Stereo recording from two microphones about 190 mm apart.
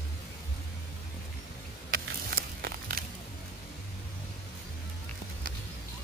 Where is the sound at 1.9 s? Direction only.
50° right (ahead or behind).